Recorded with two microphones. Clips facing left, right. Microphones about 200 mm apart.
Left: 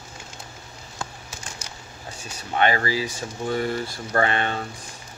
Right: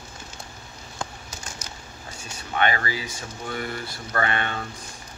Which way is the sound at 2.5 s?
35° left (ahead or behind).